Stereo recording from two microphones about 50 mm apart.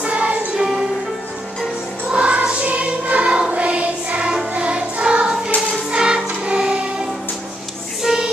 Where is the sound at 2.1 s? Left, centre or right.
Right.